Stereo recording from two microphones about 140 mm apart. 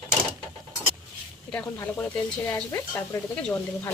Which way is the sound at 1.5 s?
10° left (ahead or behind).